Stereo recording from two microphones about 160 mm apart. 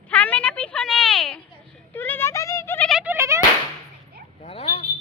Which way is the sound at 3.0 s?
15° right (ahead or behind).